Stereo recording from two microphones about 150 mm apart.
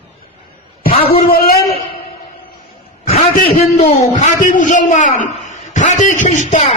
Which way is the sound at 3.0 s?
45° left (ahead or behind).